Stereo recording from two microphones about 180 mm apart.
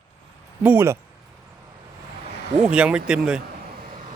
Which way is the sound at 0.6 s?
15° right (ahead or behind).